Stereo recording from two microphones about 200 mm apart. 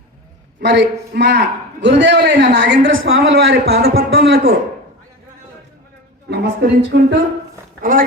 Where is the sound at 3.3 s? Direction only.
55° right (ahead or behind).